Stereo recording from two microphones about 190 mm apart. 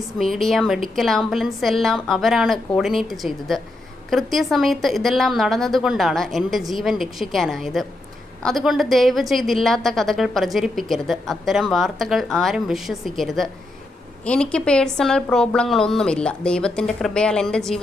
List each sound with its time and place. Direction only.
0.2 s a woman's voice: centre (ahead or behind)